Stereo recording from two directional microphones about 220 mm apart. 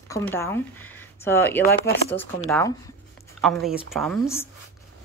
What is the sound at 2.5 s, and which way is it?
Speech, 15° left (ahead or behind).